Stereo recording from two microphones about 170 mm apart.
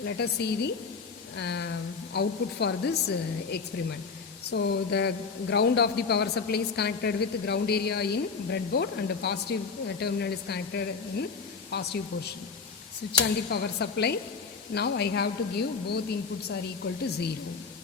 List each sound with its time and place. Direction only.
0.0 s a man's voice: 75° left (ahead or behind)
1.4 s speech: 90° left
2.1 s a man's voice: 80° left
4.5 s a man's voice: 90° left
13.5 s a man's voice: 75° left (ahead or behind)